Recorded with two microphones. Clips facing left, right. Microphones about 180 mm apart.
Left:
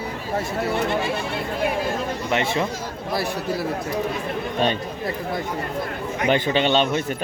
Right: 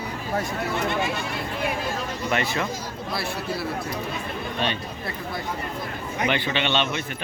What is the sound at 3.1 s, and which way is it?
Speech, 40° left (ahead or behind).